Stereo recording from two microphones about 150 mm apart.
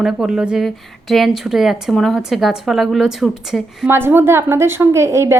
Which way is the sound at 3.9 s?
15° right (ahead or behind).